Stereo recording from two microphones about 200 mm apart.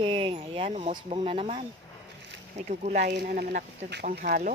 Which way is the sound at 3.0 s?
45° right (ahead or behind).